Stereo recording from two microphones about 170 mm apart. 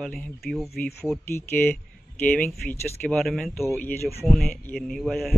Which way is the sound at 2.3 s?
10° left (ahead or behind).